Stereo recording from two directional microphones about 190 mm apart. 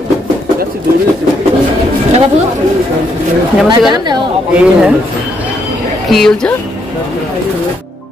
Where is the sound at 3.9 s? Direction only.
20° right (ahead or behind).